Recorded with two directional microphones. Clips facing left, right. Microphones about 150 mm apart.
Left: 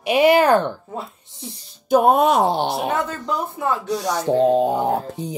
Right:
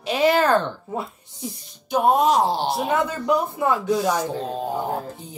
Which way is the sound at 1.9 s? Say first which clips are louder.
Left 3 dB; 55° left (ahead or behind).